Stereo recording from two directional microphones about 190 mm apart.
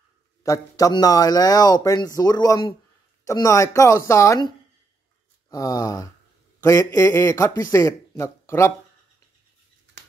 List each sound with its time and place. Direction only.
0.4 s speech: 20° left (ahead or behind)